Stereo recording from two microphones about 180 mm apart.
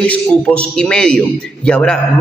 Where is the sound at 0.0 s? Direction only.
5° left (ahead or behind).